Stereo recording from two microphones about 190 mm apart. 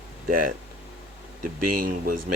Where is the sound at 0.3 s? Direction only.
45° right (ahead or behind).